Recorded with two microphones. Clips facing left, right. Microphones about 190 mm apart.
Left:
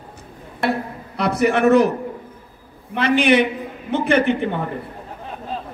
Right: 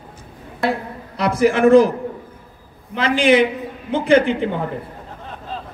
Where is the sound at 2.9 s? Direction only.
60° left (ahead or behind).